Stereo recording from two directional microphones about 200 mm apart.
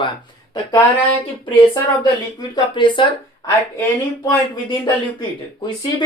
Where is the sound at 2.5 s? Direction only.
25° left (ahead or behind).